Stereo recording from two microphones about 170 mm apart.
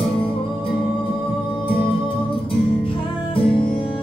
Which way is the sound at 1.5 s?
30° left (ahead or behind).